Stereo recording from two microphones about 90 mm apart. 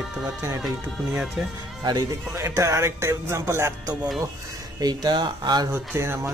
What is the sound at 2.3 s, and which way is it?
Speech, 35° right (ahead or behind).